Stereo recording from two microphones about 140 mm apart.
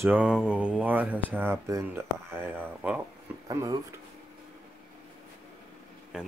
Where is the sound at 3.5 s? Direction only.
25° right (ahead or behind).